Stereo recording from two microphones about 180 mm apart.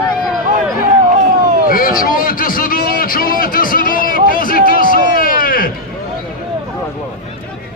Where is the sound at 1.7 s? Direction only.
50° left (ahead or behind).